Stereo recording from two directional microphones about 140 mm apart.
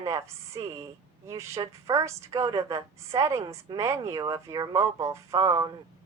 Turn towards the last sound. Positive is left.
turn(degrees=-25)  # may be behind; listen again after turning